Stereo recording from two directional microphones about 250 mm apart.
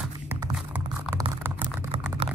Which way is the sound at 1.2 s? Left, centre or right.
Centre.